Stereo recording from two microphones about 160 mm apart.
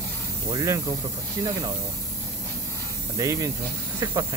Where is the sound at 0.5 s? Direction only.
20° right (ahead or behind).